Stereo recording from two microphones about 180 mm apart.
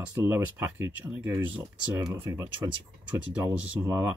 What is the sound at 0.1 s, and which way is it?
Speech, 10° right (ahead or behind).